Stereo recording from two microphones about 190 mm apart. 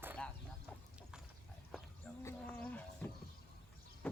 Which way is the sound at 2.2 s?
10° left (ahead or behind).